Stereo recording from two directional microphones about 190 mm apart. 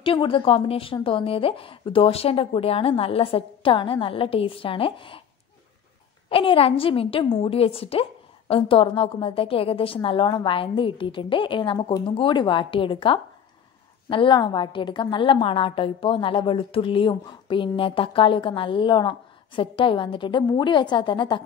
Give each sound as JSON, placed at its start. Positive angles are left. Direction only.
{"t": 0.0, "sound": "a woman's voice", "side_deg": 30}
{"t": 6.2, "sound": "a woman's voice", "side_deg": 30}